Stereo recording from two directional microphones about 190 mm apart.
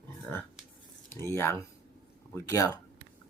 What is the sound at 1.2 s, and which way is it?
Speech, 15° left (ahead or behind).